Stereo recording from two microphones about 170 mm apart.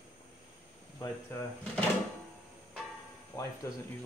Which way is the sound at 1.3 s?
15° left (ahead or behind).